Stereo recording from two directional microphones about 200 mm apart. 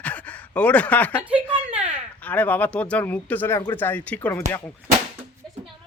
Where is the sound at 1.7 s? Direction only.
30° right (ahead or behind).